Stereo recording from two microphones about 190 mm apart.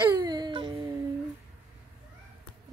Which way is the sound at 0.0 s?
20° right (ahead or behind).